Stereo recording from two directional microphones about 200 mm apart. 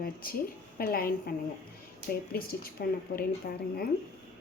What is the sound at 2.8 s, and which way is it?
Speech, 50° left (ahead or behind).